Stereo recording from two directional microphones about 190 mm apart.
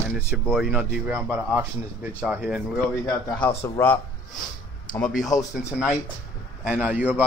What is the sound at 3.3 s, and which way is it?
Speech, 15° left (ahead or behind).